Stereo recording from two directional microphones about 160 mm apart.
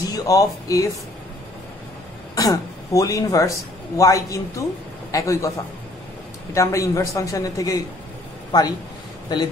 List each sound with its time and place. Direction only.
0.1 s speech: 20° left (ahead or behind)
2.3 s speech: 20° left (ahead or behind)
6.5 s a man's voice: 20° left (ahead or behind)